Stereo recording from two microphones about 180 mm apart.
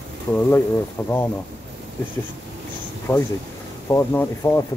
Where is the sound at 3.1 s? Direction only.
20° left (ahead or behind).